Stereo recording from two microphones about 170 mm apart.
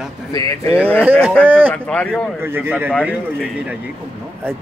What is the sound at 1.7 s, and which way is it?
Speech, 10° left (ahead or behind).